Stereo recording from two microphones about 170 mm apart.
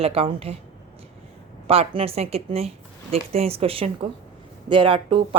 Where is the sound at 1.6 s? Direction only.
35° right (ahead or behind).